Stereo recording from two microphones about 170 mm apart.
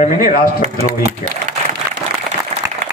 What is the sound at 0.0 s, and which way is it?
Speech, 60° left (ahead or behind).